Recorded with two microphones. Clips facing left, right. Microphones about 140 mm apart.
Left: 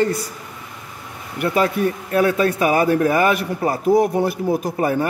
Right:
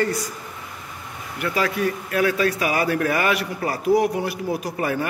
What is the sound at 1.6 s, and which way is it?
A man's voice, 30° left (ahead or behind).